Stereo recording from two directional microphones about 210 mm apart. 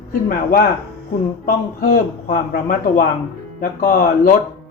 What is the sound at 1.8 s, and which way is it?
Speech, 40° left (ahead or behind).